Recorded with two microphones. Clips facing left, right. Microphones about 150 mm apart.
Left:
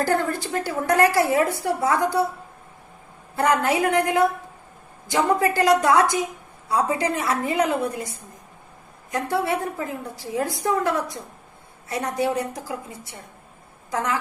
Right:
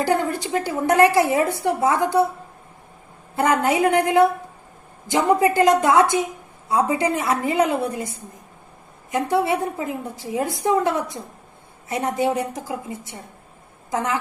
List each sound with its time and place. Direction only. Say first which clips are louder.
0.1 s a woman's voice: right 2 dB; 20° right (ahead or behind)
3.3 s a woman's voice: right 1 dB; 20° right (ahead or behind)
9.1 s a woman's voice: right 3 dB; 20° right (ahead or behind)